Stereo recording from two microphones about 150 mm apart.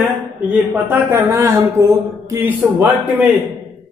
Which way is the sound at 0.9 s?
15° right (ahead or behind).